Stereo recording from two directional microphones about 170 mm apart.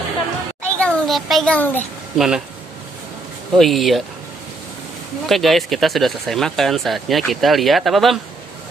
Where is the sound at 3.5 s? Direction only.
Centre (ahead or behind).